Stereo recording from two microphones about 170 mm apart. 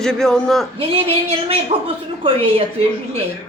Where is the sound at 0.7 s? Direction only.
35° right (ahead or behind).